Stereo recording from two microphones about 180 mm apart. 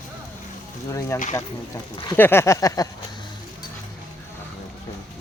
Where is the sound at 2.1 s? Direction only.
10° left (ahead or behind).